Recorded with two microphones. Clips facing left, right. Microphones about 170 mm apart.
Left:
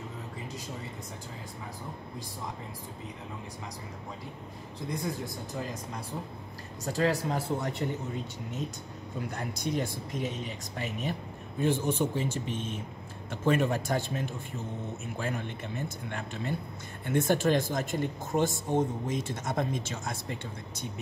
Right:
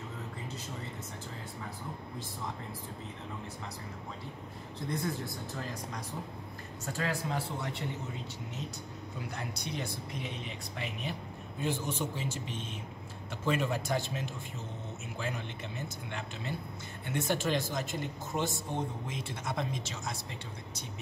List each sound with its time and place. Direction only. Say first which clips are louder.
4.9 s speech: left 1 dB; 15° left (ahead or behind)
6.9 s speech: left 6 dB; 35° left (ahead or behind)
9.3 s speech: left 8 dB; 45° left (ahead or behind)